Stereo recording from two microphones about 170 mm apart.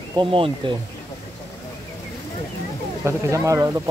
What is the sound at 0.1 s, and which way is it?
Speech, 30° right (ahead or behind).